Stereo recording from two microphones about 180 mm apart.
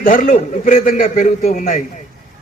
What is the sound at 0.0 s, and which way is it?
A man's voice, 50° left (ahead or behind).